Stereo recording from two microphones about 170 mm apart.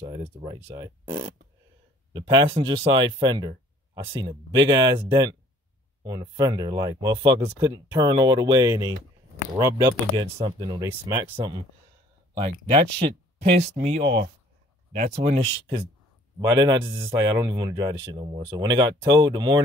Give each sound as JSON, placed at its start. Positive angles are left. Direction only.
{"t": 0.0, "sound": "a man's voice", "side_deg": -30}
{"t": 0.6, "sound": "a man's voice", "side_deg": -20}
{"t": 13.4, "sound": "speech", "side_deg": -40}
{"t": 16.3, "sound": "a man's voice", "side_deg": -25}